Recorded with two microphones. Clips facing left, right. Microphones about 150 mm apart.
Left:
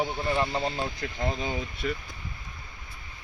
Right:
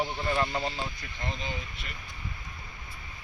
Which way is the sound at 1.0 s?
90° left.